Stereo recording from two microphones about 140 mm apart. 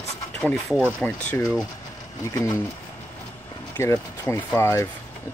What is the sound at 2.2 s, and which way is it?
Speech, 25° left (ahead or behind).